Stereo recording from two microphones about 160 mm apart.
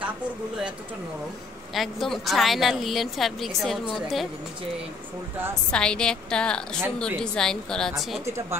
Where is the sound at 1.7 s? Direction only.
Centre (ahead or behind).